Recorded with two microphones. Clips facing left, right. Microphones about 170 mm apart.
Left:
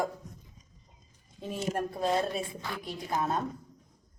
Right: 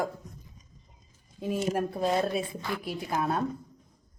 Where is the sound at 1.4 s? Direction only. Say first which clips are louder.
Right 4 dB; 5° right (ahead or behind).